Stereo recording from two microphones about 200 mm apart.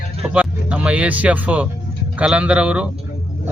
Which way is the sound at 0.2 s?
5° right (ahead or behind).